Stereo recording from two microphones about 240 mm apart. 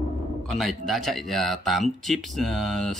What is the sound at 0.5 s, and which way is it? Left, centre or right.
Speech, centre.